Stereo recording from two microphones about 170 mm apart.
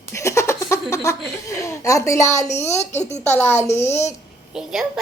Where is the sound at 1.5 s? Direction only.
20° left (ahead or behind).